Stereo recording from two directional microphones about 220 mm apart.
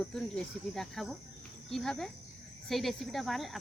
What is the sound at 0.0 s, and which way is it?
Speech, centre (ahead or behind).